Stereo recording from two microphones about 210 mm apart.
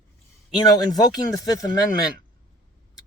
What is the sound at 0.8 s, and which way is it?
Speech, 20° left (ahead or behind).